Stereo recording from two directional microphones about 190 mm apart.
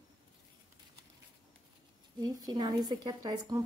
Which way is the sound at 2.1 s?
20° right (ahead or behind).